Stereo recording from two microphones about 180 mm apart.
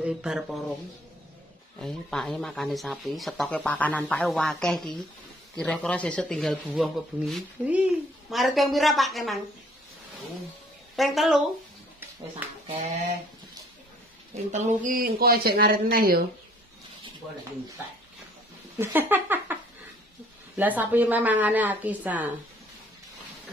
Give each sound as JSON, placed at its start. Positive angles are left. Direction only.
{"t": 0.0, "sound": "speech", "side_deg": -5}
{"t": 1.8, "sound": "speech", "side_deg": 5}
{"t": 11.0, "sound": "speech", "side_deg": 0}
{"t": 14.3, "sound": "speech", "side_deg": -40}
{"t": 18.8, "sound": "speech", "side_deg": -10}